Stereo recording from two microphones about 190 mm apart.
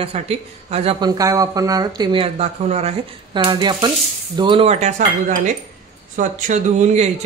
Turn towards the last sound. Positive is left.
turn(degrees=-35)  # may be behind; listen again after turning